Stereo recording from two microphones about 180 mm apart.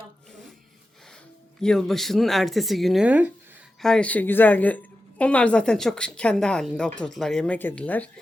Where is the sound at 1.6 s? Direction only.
5° left (ahead or behind).